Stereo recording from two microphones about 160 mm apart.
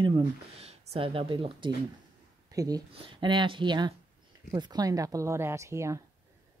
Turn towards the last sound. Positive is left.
turn(degrees=-20)  # may be behind; listen again after turning